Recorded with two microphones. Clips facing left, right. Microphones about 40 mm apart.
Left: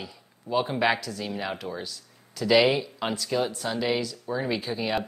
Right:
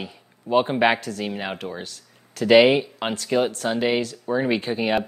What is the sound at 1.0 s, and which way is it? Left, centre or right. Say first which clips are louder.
Speech: right 4 dB; right.